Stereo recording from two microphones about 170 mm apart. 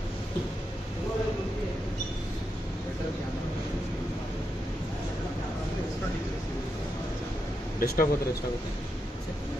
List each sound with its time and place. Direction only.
7.8 s speech: 65° left (ahead or behind)